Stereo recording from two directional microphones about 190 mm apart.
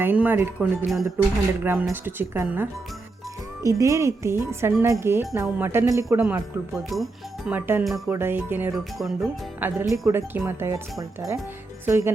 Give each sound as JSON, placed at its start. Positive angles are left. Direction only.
{"t": 0.0, "sound": "speech", "side_deg": -10}
{"t": 8.1, "sound": "speech", "side_deg": -10}
{"t": 9.0, "sound": "speech", "side_deg": 0}
{"t": 11.9, "sound": "speech", "side_deg": -15}